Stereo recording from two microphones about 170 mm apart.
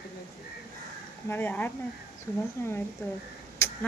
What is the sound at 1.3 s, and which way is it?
Speech, 10° left (ahead or behind).